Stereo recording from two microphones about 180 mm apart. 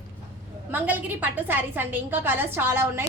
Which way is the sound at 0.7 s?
10° right (ahead or behind).